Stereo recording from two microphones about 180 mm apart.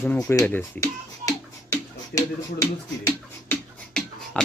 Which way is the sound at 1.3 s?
20° left (ahead or behind).